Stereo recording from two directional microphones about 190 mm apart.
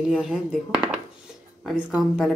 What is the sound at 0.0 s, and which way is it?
Speech, centre (ahead or behind).